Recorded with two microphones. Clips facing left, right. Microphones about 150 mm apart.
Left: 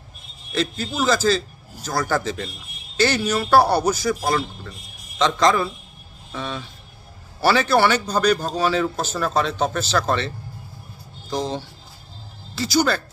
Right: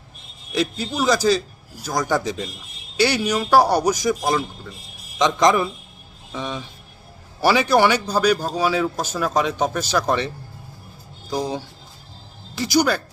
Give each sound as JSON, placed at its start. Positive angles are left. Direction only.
{"t": 0.5, "sound": "a man's voice", "side_deg": -15}